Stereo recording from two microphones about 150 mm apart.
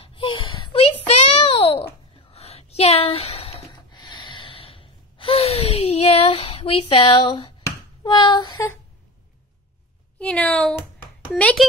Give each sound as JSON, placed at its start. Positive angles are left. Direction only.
{"t": 0.0, "sound": "a sound", "side_deg": 35}
{"t": 3.9, "sound": "gasp", "side_deg": 30}
{"t": 8.0, "sound": "child singing", "side_deg": 30}
{"t": 10.1, "sound": "speech", "side_deg": 10}